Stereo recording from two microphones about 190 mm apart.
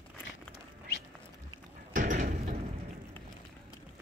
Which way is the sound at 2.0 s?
45° right (ahead or behind).